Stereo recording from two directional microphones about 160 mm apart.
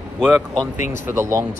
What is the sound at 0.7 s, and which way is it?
Speech, 50° left (ahead or behind).